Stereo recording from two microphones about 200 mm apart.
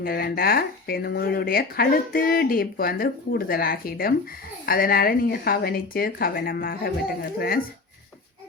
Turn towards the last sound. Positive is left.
turn(degrees=50)  # may be behind; listen again after turning